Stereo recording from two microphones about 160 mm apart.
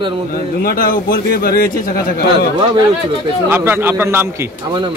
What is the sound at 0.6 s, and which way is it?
A man's voice, 60° left (ahead or behind).